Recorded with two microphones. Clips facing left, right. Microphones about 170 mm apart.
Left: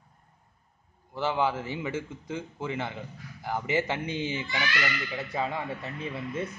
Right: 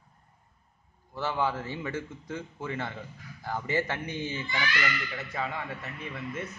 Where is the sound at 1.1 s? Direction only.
15° left (ahead or behind).